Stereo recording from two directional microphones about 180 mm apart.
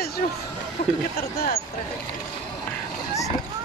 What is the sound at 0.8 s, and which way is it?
Speech, 40° left (ahead or behind).